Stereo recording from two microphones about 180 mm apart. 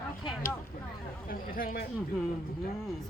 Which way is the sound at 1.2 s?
50° left (ahead or behind).